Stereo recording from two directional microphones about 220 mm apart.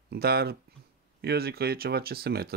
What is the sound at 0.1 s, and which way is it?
Speech, 45° right (ahead or behind).